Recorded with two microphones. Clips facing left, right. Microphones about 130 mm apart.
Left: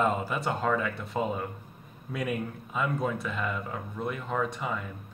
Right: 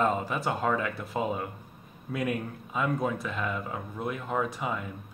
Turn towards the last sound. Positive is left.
turn(degrees=-5)  # may be behind; listen again after turning